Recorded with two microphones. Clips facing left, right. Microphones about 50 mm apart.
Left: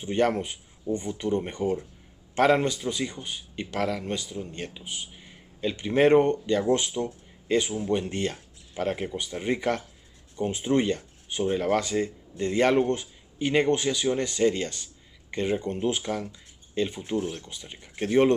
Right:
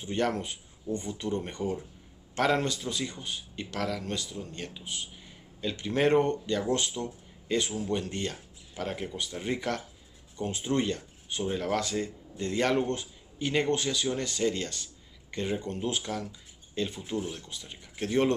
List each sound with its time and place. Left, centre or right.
0.0 s a man's voice: centre